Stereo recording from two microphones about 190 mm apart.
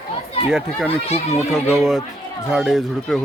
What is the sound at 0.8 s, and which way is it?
Speech, 35° left (ahead or behind).